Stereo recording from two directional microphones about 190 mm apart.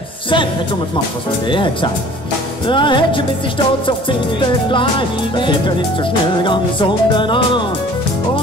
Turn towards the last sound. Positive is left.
turn(degrees=25)  # may be behind; listen again after turning